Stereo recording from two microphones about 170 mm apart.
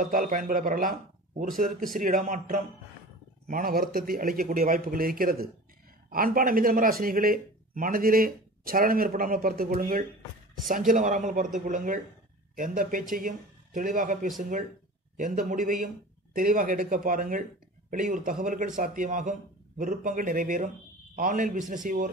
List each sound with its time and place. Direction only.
0.0 s speech: 55° right (ahead or behind)